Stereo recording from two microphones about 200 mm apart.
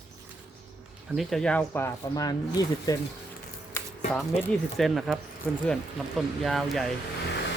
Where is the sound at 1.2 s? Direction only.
Centre (ahead or behind); by 3.0 s 20° left (ahead or behind).